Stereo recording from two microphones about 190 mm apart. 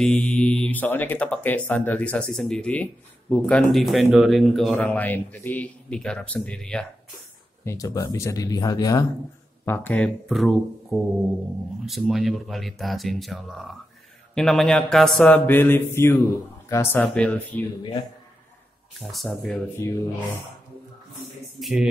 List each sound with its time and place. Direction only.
0.0 s speech: 5° left (ahead or behind)
7.6 s speech: 15° left (ahead or behind)
9.7 s speech: 10° left (ahead or behind)
18.9 s speech: centre (ahead or behind)
21.5 s speech: centre (ahead or behind)